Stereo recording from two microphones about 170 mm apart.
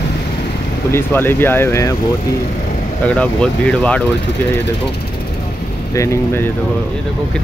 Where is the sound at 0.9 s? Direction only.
15° left (ahead or behind).